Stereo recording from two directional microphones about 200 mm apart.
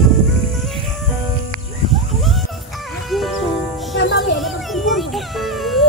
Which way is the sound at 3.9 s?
60° left (ahead or behind).